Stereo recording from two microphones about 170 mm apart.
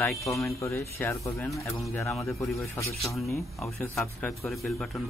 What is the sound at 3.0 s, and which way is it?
Speech, centre (ahead or behind).